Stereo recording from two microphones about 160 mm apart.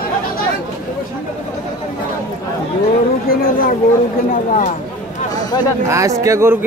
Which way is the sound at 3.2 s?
65° left (ahead or behind).